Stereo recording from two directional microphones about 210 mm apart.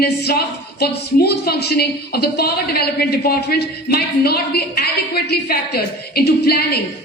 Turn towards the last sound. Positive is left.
turn(degrees=50)  # may be behind; listen again after turning